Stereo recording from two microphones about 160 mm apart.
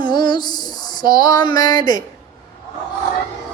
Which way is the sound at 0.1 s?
30° left (ahead or behind).